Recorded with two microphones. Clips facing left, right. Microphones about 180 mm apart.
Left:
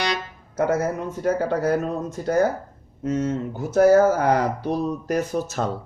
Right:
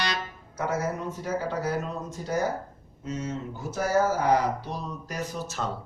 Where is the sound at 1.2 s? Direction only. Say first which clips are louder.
Left 9 dB; 60° left (ahead or behind).